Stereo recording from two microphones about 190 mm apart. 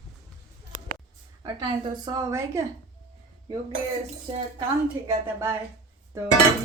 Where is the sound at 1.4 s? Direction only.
25° right (ahead or behind).